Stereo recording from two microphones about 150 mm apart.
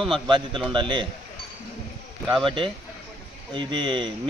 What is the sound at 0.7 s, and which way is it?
Speech, 30° right (ahead or behind).